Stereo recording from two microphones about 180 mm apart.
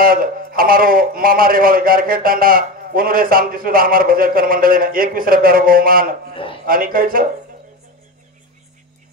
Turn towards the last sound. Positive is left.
turn(degrees=-50)  # may be behind; listen again after turning